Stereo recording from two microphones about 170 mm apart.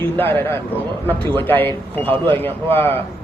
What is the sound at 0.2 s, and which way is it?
A man's voice, 10° left (ahead or behind).